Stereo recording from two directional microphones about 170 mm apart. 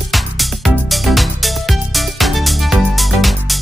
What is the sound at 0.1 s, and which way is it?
Music, centre (ahead or behind).